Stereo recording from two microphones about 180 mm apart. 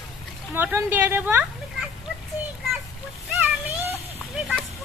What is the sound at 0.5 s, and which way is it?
Speech, 10° right (ahead or behind).